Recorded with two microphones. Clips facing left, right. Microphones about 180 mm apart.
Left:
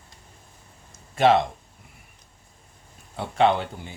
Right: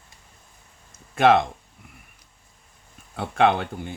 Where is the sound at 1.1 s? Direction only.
55° right (ahead or behind).